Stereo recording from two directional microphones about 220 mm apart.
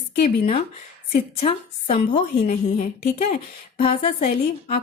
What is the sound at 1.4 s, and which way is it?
A woman's voice, 30° left (ahead or behind).